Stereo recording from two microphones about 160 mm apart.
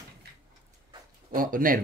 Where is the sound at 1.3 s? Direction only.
60° right (ahead or behind).